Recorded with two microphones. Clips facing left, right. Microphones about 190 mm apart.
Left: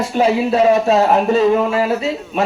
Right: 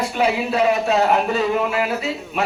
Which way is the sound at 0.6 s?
45° left (ahead or behind).